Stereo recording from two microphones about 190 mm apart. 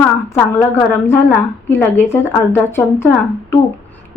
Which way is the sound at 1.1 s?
10° left (ahead or behind).